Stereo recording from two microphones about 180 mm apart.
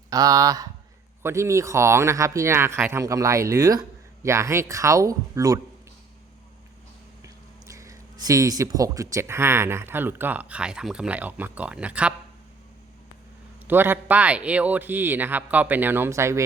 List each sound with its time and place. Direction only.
0.1 s speech: 20° right (ahead or behind)
7.7 s speech: 20° right (ahead or behind)
13.7 s speech: 10° right (ahead or behind)